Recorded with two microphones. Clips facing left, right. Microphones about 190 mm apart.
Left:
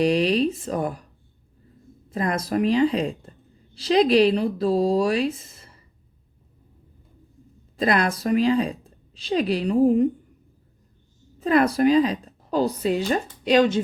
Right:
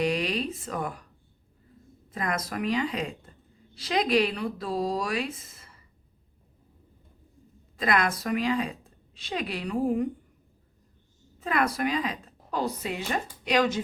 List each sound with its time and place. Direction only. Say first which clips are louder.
0.0 s a woman's voice: left 8 dB; 30° left (ahead or behind)
2.1 s a woman's voice: left 7 dB; 30° left (ahead or behind)
7.8 s a woman's voice: left 4 dB; 30° left (ahead or behind)
11.3 s a woman's voice: left 8 dB; 30° left (ahead or behind)